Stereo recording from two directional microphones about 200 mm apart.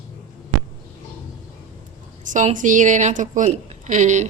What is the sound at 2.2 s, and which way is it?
A woman's voice, 40° right (ahead or behind).